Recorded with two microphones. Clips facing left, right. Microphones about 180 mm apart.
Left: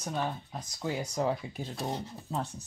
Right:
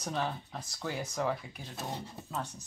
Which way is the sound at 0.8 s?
25° left (ahead or behind).